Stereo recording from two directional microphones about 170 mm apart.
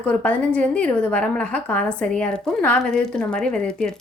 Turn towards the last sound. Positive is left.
turn(degrees=5)  # may be behind; listen again after turning